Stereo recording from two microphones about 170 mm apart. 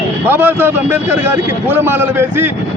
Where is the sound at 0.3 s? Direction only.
10° right (ahead or behind).